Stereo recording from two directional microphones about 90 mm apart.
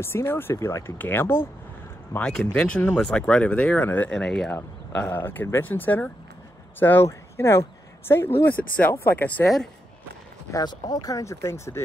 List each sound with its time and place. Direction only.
0.0 s speech: 25° left (ahead or behind)
2.1 s speech: 10° left (ahead or behind); by 7.6 s 30° left (ahead or behind)
8.4 s speech: 20° left (ahead or behind)
10.6 s speech: 50° left (ahead or behind); by 11.8 s 30° left (ahead or behind)